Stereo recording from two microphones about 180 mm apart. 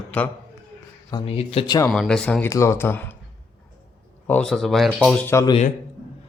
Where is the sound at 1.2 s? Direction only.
35° left (ahead or behind).